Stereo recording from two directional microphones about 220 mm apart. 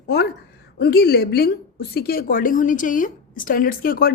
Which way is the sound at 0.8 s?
45° left (ahead or behind).